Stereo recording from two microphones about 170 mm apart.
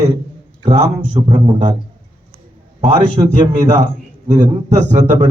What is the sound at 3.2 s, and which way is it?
Speech, 30° right (ahead or behind).